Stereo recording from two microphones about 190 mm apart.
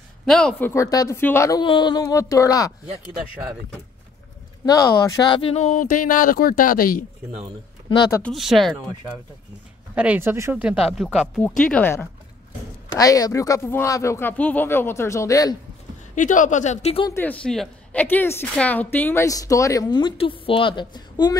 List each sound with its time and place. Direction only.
0.2 s a woman's voice: 5° left (ahead or behind)
3.1 s speech: 5° right (ahead or behind)
4.6 s speech: 20° left (ahead or behind); by 7.1 s 50° left (ahead or behind)
8.2 s speech: centre (ahead or behind)
9.9 s a woman's voice: 10° right (ahead or behind); by 15.5 s 15° left (ahead or behind)
16.2 s speech: 40° left (ahead or behind)
17.1 s a woman's voice: 10° left (ahead or behind)